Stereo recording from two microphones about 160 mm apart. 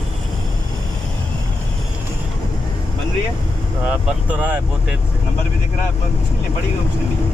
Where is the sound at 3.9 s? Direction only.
10° right (ahead or behind).